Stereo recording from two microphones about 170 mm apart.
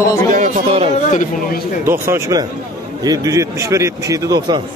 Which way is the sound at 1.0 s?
45° left (ahead or behind).